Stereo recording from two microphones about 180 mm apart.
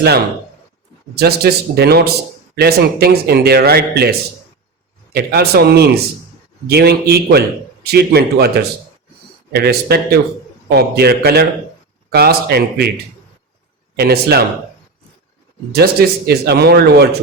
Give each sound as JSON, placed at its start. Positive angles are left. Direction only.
{"t": 1.2, "sound": "speech", "side_deg": -60}
{"t": 5.1, "sound": "speech", "side_deg": -60}
{"t": 13.9, "sound": "speech", "side_deg": -60}
{"t": 15.7, "sound": "speech", "side_deg": -60}